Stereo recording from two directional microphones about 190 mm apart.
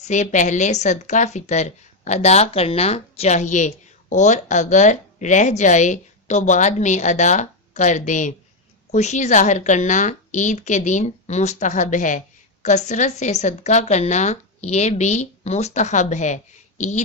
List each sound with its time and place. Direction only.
0.0 s a woman's voice: 40° left (ahead or behind)